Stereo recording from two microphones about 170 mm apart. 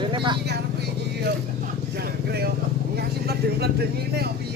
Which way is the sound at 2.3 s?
70° right (ahead or behind).